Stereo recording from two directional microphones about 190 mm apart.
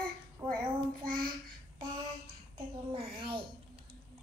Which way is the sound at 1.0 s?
50° right (ahead or behind).